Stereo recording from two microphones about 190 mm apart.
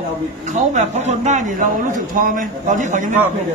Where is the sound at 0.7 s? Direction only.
40° right (ahead or behind).